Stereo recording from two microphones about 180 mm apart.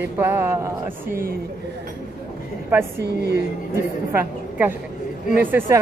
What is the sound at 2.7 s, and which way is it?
Speech, 15° right (ahead or behind).